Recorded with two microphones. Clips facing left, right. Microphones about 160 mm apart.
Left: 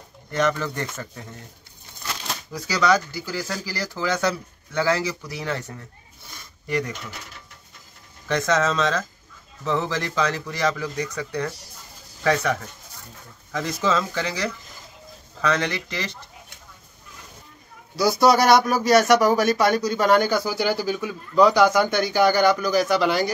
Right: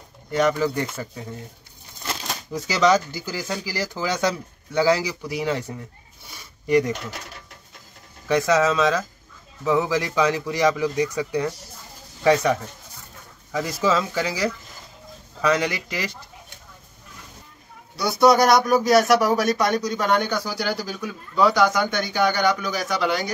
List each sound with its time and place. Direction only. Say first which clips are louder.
0.3 s speech: right 3 dB; 10° right (ahead or behind)
2.5 s speech: right 2 dB; 20° right (ahead or behind)
6.3 s zipper: right 7 dB; 15° right (ahead or behind)
8.3 s speech: right 3 dB; 10° right (ahead or behind)
17.9 s speech: right 1 dB; centre (ahead or behind)